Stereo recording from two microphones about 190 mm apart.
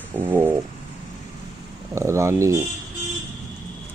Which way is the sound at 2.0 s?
15° right (ahead or behind).